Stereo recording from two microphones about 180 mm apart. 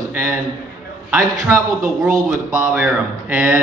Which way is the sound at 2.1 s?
45° right (ahead or behind).